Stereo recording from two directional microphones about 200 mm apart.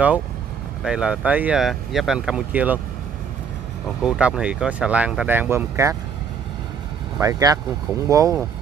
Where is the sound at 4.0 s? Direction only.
5° right (ahead or behind).